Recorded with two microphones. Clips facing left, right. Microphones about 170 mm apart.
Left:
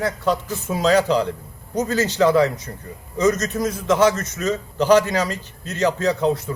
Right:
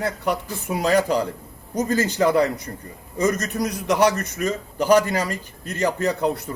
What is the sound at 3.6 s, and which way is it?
A man's voice, 15° right (ahead or behind).